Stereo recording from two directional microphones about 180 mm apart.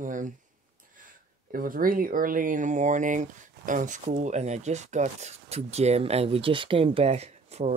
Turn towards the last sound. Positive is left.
turn(degrees=-35)  # may be behind; listen again after turning